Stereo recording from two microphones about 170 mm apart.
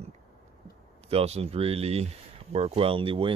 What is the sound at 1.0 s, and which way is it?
Speech, 40° right (ahead or behind).